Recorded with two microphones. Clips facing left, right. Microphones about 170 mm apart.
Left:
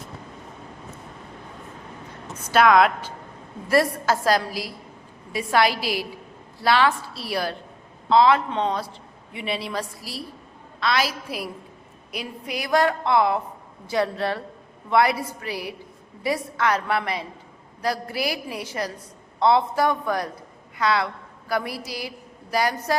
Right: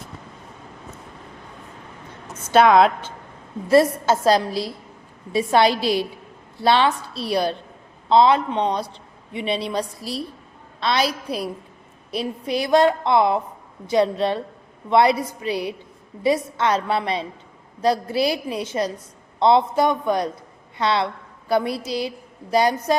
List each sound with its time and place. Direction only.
2.4 s a woman's voice: 25° right (ahead or behind)